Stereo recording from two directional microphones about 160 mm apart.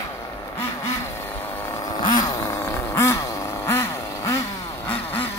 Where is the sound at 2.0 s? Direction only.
25° left (ahead or behind).